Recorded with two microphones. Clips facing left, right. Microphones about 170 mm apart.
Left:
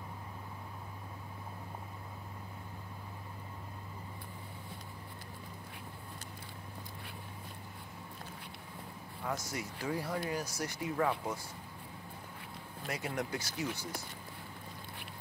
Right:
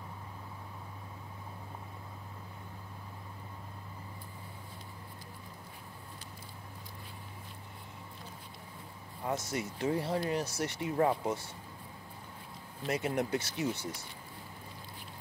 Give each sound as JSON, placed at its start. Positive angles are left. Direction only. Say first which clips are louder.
{"t": 9.2, "sound": "speech", "louder": "right 4 dB", "side_deg": -25}
{"t": 12.8, "sound": "speech", "louder": "right 6 dB", "side_deg": -25}